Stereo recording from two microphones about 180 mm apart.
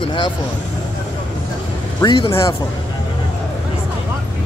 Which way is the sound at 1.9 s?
25° left (ahead or behind).